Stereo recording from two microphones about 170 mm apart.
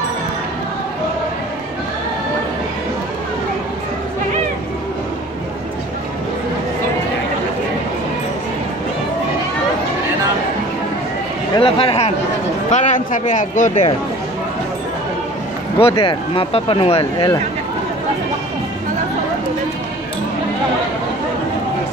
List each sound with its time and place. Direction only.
11.5 s speech: 30° left (ahead or behind)
12.7 s speech: 45° left (ahead or behind)
15.8 s speech: 30° left (ahead or behind)